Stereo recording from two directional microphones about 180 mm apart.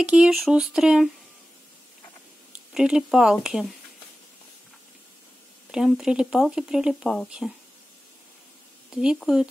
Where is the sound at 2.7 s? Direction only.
5° right (ahead or behind).